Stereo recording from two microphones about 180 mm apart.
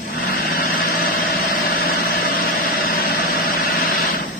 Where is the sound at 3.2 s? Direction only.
50° left (ahead or behind).